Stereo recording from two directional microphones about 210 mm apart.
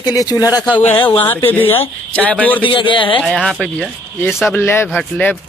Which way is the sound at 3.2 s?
Centre (ahead or behind).